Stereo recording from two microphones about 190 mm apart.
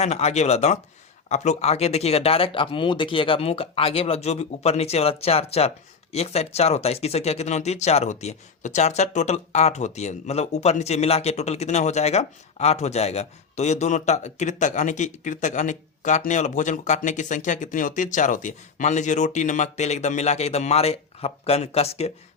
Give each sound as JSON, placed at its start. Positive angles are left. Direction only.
{"t": 0.0, "sound": "speech", "side_deg": 35}